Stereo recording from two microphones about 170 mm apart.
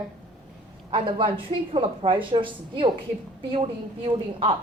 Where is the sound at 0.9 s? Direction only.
30° right (ahead or behind).